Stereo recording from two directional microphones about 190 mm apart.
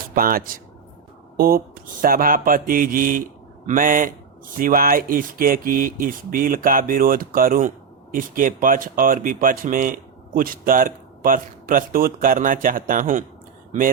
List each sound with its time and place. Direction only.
0.1 s speech: 50° right (ahead or behind)